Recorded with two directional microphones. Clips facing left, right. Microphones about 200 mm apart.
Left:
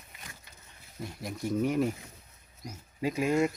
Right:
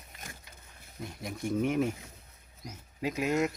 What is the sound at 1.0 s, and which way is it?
Speech, centre (ahead or behind).